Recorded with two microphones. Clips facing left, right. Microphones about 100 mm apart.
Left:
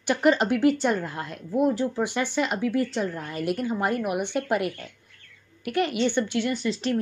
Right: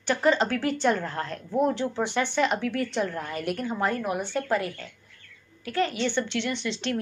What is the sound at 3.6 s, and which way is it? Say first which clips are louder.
Speech: even; 15° left (ahead or behind).